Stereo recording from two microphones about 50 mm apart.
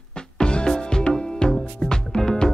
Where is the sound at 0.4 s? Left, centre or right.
Centre.